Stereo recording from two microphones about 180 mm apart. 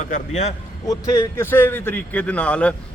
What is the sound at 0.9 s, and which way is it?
A man's voice, 15° left (ahead or behind).